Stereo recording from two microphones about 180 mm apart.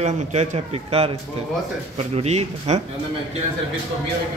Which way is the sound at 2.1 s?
35° right (ahead or behind).